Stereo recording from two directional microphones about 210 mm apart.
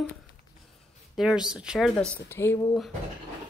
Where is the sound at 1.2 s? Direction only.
5° right (ahead or behind).